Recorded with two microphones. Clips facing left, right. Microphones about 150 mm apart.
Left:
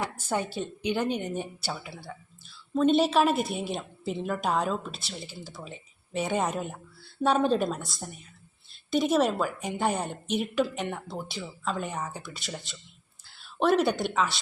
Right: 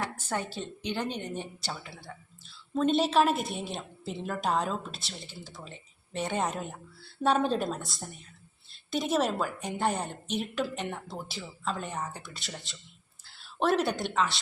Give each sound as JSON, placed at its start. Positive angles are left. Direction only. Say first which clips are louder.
{"t": 0.2, "sound": "a woman's voice", "louder": "left 4 dB", "side_deg": 10}